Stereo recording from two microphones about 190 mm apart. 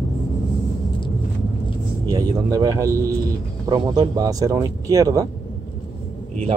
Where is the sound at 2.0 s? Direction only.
20° right (ahead or behind).